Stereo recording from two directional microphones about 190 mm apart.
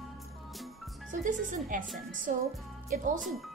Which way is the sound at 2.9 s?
40° right (ahead or behind).